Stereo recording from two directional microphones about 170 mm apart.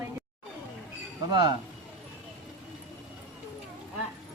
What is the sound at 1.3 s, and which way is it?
Speech, 25° right (ahead or behind).